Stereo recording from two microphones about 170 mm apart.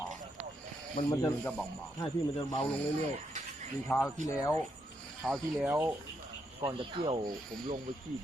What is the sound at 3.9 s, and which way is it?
Speech, 15° left (ahead or behind).